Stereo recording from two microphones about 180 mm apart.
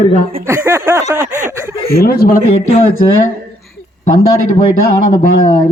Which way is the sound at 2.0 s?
55° left (ahead or behind).